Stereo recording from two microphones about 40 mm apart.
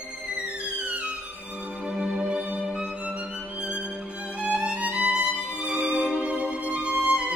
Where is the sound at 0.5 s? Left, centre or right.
Right.